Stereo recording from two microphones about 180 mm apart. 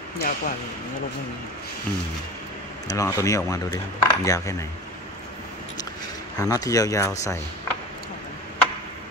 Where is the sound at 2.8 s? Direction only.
20° left (ahead or behind).